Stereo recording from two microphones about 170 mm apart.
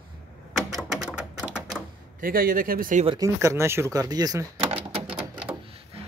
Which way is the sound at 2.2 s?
60° right (ahead or behind).